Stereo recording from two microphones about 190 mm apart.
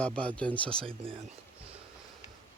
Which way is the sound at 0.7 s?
30° right (ahead or behind).